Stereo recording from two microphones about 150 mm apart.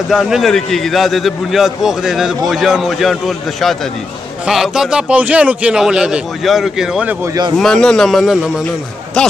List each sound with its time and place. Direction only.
0.1 s a man's voice: centre (ahead or behind)